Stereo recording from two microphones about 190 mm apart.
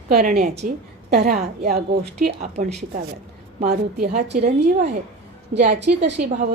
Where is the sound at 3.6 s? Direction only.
55° right (ahead or behind).